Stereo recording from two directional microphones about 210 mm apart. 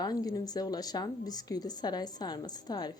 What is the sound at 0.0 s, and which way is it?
Speech, 20° left (ahead or behind).